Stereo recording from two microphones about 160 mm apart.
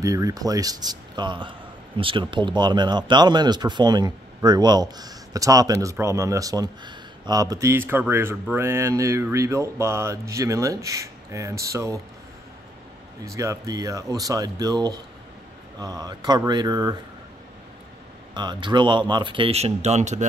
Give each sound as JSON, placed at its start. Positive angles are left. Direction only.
{"t": 0.0, "sound": "speech", "side_deg": -20}
{"t": 13.2, "sound": "speech", "side_deg": -20}
{"t": 18.3, "sound": "speech", "side_deg": -30}